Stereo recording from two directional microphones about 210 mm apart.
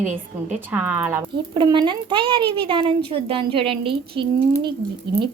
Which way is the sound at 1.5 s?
20° right (ahead or behind).